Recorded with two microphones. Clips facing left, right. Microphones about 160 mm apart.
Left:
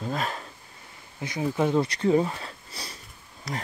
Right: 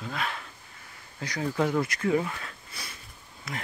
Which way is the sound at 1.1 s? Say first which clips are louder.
Left 2 dB; 20° left (ahead or behind).